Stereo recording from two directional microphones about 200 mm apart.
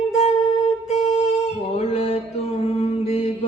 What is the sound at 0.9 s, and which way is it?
Music, 30° left (ahead or behind).